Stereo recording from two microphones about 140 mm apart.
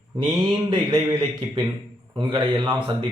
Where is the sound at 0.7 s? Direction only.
35° right (ahead or behind).